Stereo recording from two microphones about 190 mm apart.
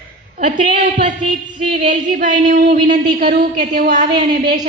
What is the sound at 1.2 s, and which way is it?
Speech, 25° right (ahead or behind).